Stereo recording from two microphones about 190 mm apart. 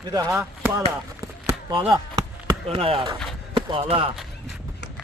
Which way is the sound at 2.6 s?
30° right (ahead or behind).